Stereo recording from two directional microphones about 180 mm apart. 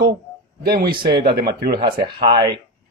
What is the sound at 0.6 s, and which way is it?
Speech, 55° right (ahead or behind).